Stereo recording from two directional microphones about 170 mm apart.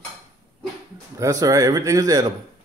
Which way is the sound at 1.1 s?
20° right (ahead or behind).